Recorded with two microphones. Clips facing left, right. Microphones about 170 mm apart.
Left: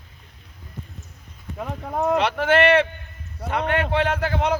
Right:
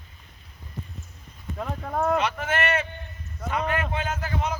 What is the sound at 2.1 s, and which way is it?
Speech, 70° left (ahead or behind).